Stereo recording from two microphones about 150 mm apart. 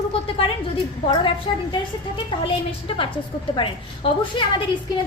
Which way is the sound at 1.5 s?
35° left (ahead or behind).